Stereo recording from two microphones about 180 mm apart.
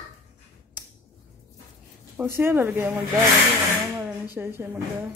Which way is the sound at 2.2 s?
10° right (ahead or behind).